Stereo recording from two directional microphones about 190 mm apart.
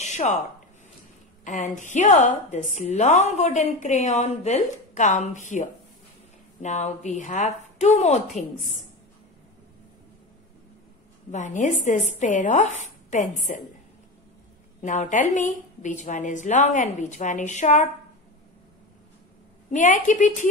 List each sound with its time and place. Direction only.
0.0 s a sound: 35° left (ahead or behind)
1.4 s a woman's voice: 40° left (ahead or behind)
11.3 s a woman's voice: 40° left (ahead or behind)
14.8 s a woman's voice: 40° left (ahead or behind)
19.7 s a woman's voice: 40° left (ahead or behind)